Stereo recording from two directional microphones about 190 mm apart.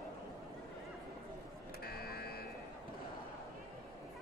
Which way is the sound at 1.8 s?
55° left (ahead or behind).